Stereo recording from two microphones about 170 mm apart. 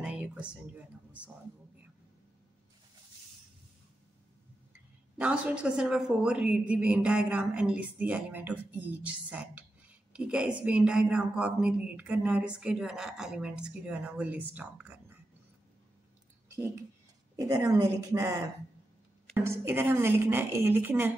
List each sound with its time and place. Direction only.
0.0 s a sound: 5° right (ahead or behind)
5.2 s a woman's voice: 5° right (ahead or behind)
17.4 s a woman's voice: 20° right (ahead or behind)